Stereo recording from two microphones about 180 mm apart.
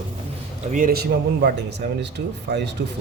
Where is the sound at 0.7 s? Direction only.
50° right (ahead or behind); by 2.7 s 70° right (ahead or behind).